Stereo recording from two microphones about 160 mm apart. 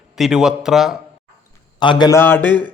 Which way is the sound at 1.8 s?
30° left (ahead or behind).